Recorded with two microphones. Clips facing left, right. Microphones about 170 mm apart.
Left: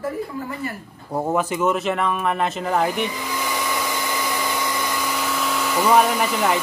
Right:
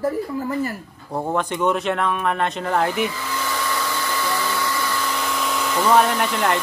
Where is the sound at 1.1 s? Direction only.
5° left (ahead or behind).